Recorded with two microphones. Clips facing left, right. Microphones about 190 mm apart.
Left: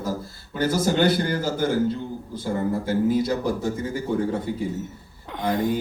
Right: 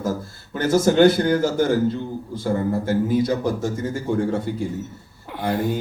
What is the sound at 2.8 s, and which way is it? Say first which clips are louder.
Speech: right 1 dB; 50° right (ahead or behind).